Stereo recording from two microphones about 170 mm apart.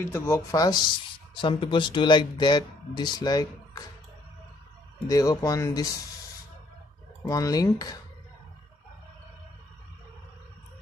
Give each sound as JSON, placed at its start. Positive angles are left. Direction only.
{"t": 0.0, "sound": "speech", "side_deg": 15}
{"t": 5.0, "sound": "speech", "side_deg": 20}
{"t": 7.2, "sound": "speech", "side_deg": 20}